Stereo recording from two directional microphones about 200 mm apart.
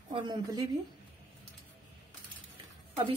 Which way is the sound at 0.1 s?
20° right (ahead or behind).